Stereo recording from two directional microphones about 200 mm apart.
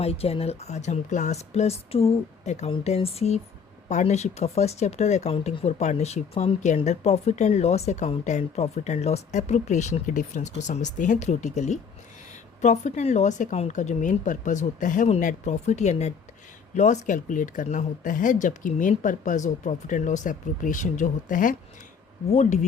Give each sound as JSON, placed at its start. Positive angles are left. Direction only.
{"t": 0.0, "sound": "speech", "side_deg": 30}